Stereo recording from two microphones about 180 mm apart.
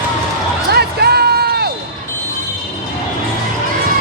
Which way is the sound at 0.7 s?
60° right (ahead or behind).